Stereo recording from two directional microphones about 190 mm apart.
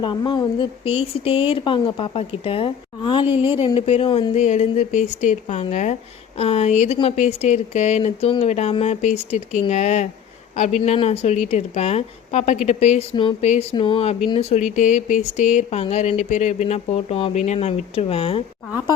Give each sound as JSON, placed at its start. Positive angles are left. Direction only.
{"t": 0.0, "sound": "speech", "side_deg": 25}